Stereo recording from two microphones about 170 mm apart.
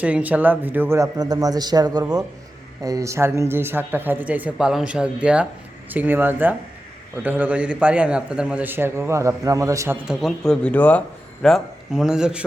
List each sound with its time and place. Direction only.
0.0 s a man's voice: 10° right (ahead or behind)
10.1 s speech: centre (ahead or behind)